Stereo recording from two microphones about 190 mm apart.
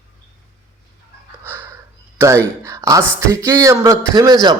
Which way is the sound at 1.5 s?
10° right (ahead or behind).